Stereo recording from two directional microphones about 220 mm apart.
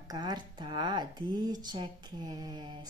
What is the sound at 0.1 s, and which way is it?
Speech, 20° right (ahead or behind).